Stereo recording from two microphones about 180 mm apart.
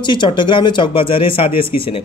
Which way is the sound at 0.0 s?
25° left (ahead or behind).